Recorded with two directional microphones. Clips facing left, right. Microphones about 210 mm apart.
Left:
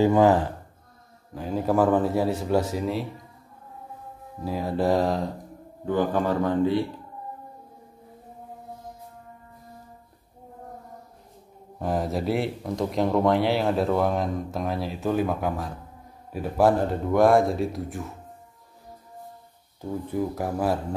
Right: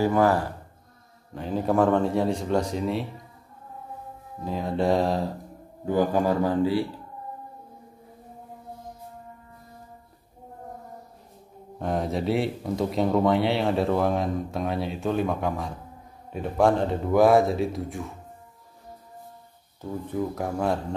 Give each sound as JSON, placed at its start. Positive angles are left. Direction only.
{"t": 0.0, "sound": "speech", "side_deg": 15}
{"t": 1.3, "sound": "speech", "side_deg": 0}
{"t": 4.5, "sound": "speech", "side_deg": 5}
{"t": 11.8, "sound": "speech", "side_deg": 0}
{"t": 19.8, "sound": "speech", "side_deg": 10}